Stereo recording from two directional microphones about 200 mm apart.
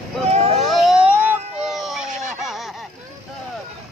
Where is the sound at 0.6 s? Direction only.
Centre (ahead or behind).